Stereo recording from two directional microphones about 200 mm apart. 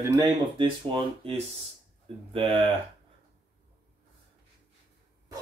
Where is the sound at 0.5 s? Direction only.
25° right (ahead or behind).